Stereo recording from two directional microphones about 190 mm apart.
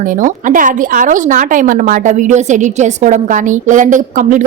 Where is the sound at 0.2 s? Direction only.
45° right (ahead or behind).